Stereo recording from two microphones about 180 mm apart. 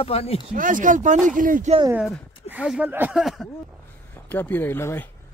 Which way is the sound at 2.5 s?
5° right (ahead or behind).